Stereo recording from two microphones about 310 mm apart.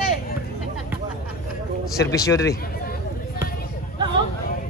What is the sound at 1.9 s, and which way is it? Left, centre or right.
Speech, centre.